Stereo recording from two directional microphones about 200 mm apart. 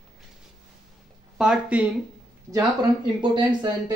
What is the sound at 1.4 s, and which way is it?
Speech, 5° right (ahead or behind).